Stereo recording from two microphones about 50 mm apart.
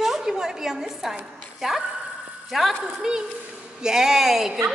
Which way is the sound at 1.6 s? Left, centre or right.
Centre.